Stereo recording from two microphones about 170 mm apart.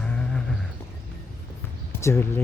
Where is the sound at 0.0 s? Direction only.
5° left (ahead or behind).